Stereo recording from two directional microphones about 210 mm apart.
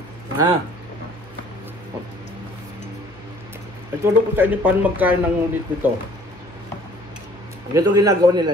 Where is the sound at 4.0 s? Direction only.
10° right (ahead or behind).